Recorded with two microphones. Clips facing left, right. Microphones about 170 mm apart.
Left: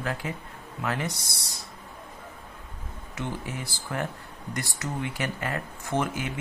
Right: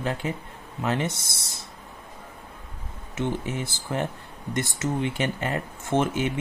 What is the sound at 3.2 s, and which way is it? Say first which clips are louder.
Speech: right 6 dB; 25° right (ahead or behind).